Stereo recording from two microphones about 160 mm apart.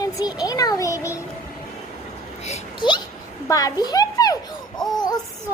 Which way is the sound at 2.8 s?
30° left (ahead or behind).